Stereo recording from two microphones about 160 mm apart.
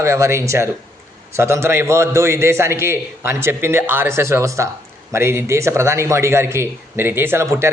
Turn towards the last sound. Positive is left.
turn(degrees=-15)  # may be behind; listen again after turning